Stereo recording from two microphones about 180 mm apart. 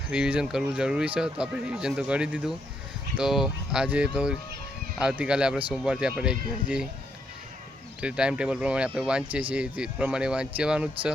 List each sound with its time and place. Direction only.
0.1 s speech: 5° right (ahead or behind)
8.0 s speech: 5° right (ahead or behind)